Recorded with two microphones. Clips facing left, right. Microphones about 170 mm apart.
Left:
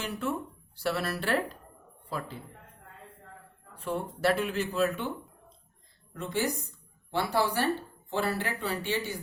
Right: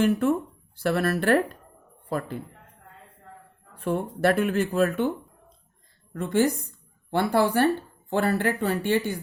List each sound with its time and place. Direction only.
0.0 s speech: 55° right (ahead or behind)
3.8 s speech: 55° right (ahead or behind)
6.1 s a woman's voice: 50° right (ahead or behind)